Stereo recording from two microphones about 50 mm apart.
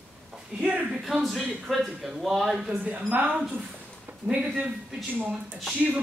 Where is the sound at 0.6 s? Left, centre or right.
Right.